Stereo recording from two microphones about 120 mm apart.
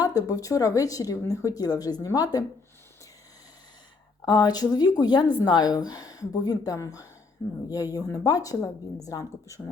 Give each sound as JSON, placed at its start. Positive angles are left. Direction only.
{"t": 0.0, "sound": "speech", "side_deg": 30}
{"t": 4.3, "sound": "speech", "side_deg": 35}